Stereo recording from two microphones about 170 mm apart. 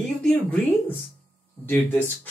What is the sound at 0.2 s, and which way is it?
Speech, 10° left (ahead or behind).